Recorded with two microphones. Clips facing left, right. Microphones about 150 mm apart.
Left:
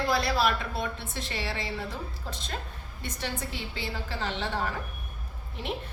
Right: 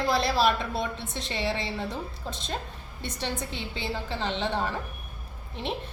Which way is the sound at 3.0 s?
25° right (ahead or behind).